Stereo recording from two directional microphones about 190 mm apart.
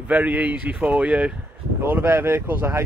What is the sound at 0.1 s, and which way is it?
Speech, 10° right (ahead or behind).